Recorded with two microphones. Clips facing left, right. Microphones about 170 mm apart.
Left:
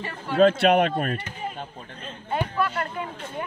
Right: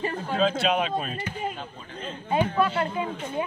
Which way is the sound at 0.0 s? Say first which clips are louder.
Right 3 dB; 35° right (ahead or behind).